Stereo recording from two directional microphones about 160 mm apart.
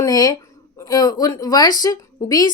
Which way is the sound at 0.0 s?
25° left (ahead or behind).